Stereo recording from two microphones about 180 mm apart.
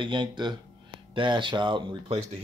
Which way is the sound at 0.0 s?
25° right (ahead or behind).